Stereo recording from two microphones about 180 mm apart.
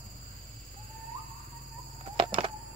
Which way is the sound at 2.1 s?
25° right (ahead or behind).